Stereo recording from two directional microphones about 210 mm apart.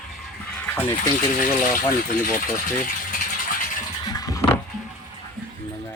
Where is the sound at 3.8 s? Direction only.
15° left (ahead or behind).